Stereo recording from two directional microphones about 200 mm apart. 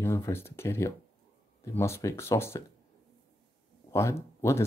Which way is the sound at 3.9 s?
15° left (ahead or behind).